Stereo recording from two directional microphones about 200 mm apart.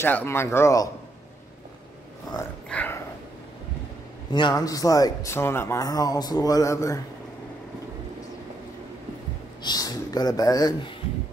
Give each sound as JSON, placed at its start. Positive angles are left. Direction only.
{"t": 0.0, "sound": "speech", "side_deg": 10}
{"t": 2.7, "sound": "dog", "side_deg": 10}
{"t": 4.3, "sound": "speech", "side_deg": 20}
{"t": 9.6, "sound": "speech", "side_deg": 20}